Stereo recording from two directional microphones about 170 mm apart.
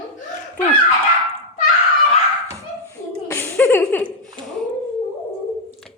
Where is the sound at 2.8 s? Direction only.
15° left (ahead or behind).